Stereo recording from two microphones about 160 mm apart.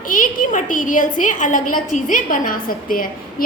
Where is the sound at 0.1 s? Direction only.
60° left (ahead or behind).